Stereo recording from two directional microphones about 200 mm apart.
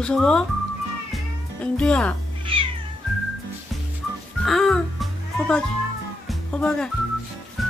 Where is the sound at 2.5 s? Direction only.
25° right (ahead or behind).